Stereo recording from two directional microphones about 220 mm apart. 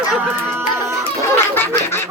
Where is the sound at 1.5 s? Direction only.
10° left (ahead or behind).